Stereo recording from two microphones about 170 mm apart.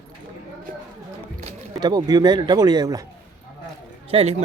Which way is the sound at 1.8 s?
25° right (ahead or behind).